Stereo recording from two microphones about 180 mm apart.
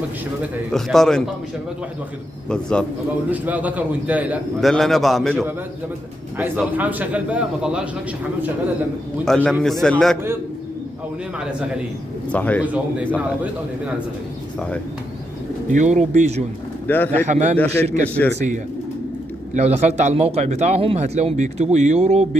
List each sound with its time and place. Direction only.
0.7 s a man's voice: centre (ahead or behind)
2.5 s a man's voice: 5° left (ahead or behind)
3.3 s a man's voice: 10° right (ahead or behind)
6.3 s a man's voice: 10° right (ahead or behind)
9.2 s a man's voice: 5° left (ahead or behind)
12.3 s speech: 10° left (ahead or behind)
15.7 s speech: 40° right (ahead or behind)
16.8 s speech: 10° left (ahead or behind)
17.3 s speech: 40° right (ahead or behind)
18.0 s speech: 10° left (ahead or behind)
19.5 s speech: 40° right (ahead or behind)